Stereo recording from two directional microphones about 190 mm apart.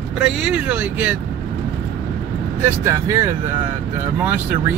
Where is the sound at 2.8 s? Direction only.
15° right (ahead or behind).